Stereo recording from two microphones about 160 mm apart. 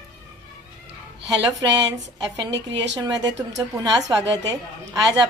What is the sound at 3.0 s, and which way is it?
A woman's voice, 25° right (ahead or behind).